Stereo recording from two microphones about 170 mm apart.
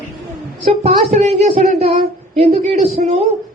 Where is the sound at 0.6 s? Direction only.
35° right (ahead or behind).